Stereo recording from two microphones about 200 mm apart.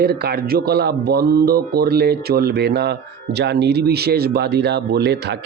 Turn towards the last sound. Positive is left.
turn(degrees=-55)  # may be behind; listen again after turning